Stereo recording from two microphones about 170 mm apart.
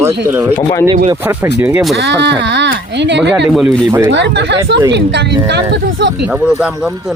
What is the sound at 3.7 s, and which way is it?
Speech, 10° right (ahead or behind).